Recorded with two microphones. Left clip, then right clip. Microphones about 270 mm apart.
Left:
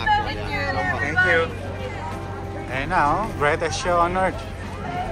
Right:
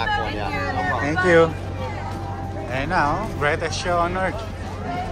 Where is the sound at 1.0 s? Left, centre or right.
Centre.